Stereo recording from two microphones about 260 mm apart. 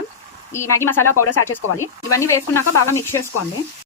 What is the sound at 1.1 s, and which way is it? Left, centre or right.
Speech, left.